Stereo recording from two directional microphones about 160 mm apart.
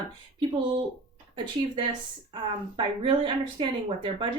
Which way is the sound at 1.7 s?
30° right (ahead or behind).